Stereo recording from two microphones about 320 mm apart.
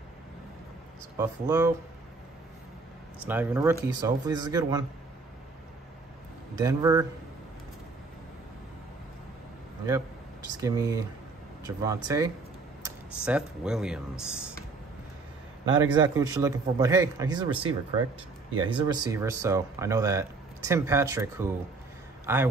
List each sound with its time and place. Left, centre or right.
1.1 s speech: centre
3.3 s speech: centre
6.5 s speech: centre
10.6 s speech: centre
15.7 s speech: centre
18.7 s a man's voice: centre